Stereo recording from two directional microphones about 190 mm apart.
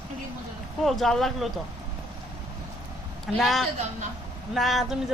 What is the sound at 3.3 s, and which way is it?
Speech, centre (ahead or behind).